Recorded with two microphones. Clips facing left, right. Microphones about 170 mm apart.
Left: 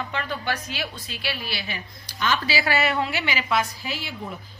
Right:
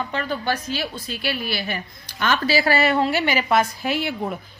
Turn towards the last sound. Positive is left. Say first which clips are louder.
# right 9 dB
turn(degrees=-60)  # may be behind; listen again after turning